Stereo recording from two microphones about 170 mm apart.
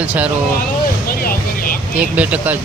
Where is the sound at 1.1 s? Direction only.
60° left (ahead or behind).